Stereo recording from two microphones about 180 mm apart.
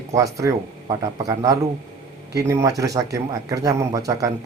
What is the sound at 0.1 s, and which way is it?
Speech, 20° right (ahead or behind).